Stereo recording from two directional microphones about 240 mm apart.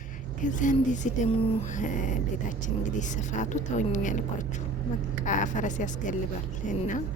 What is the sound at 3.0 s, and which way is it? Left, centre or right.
Speech, left.